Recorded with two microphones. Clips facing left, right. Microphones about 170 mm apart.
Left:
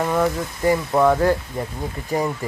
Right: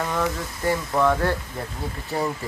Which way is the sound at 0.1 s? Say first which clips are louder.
Left 5 dB; 15° left (ahead or behind).